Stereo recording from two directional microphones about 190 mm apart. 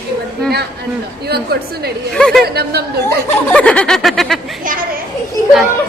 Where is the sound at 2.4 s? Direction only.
55° right (ahead or behind).